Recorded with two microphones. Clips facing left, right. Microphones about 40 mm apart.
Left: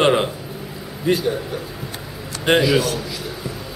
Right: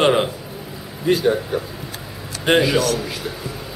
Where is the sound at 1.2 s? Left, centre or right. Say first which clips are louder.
Right 4 dB; right.